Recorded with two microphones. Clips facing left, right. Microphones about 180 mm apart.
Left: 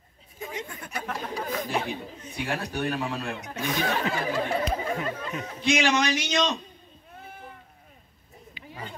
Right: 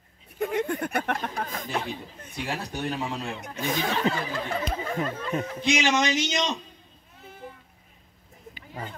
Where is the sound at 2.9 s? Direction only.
20° right (ahead or behind).